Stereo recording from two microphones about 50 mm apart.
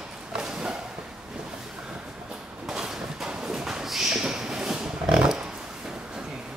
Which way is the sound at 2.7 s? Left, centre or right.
Centre.